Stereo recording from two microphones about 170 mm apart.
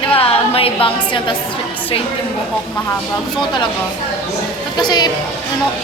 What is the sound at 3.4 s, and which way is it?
Speech, 25° left (ahead or behind).